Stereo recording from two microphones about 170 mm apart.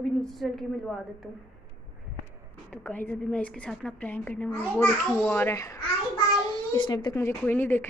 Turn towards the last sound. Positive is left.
turn(degrees=10)  # may be behind; listen again after turning